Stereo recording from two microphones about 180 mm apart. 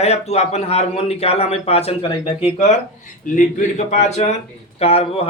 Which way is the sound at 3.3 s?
45° left (ahead or behind).